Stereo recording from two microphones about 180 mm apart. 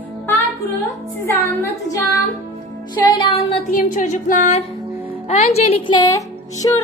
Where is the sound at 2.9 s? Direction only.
25° left (ahead or behind).